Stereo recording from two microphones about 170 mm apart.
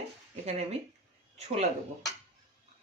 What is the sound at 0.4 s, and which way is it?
Speech, 40° right (ahead or behind).